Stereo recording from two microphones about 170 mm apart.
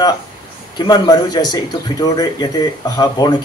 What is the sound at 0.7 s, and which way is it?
Speech, 25° left (ahead or behind).